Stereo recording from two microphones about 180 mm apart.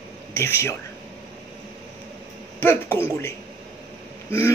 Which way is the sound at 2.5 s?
15° left (ahead or behind).